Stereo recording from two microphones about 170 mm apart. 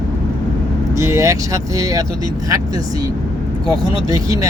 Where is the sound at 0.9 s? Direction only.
15° right (ahead or behind).